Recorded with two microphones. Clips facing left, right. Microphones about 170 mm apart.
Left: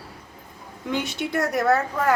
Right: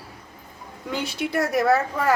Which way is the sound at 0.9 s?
Centre (ahead or behind).